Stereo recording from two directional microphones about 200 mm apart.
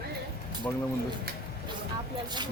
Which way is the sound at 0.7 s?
10° left (ahead or behind).